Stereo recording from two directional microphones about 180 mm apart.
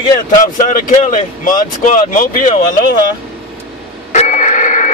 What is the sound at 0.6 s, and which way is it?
Speech, 45° left (ahead or behind).